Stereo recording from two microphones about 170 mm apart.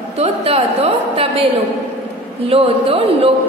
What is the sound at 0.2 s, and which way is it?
A woman's voice, 35° right (ahead or behind).